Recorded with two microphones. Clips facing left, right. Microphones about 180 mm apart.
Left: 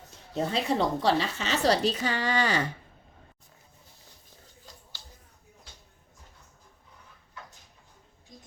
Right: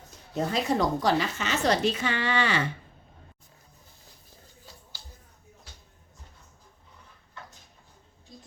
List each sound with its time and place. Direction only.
0.3 s speech: 30° left (ahead or behind)